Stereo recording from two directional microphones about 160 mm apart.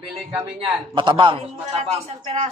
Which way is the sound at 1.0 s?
30° right (ahead or behind).